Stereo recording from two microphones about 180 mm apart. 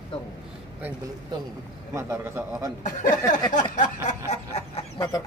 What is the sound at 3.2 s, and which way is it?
Speech, 20° left (ahead or behind).